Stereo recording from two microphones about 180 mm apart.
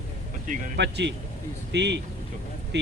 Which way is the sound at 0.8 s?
75° right (ahead or behind).